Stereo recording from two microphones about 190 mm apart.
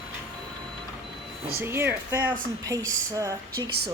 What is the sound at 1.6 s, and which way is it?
A woman's voice, 10° right (ahead or behind).